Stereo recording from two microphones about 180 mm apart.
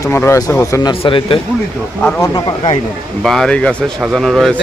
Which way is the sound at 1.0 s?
30° left (ahead or behind).